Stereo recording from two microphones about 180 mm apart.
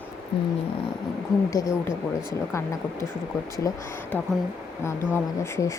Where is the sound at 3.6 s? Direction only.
20° left (ahead or behind).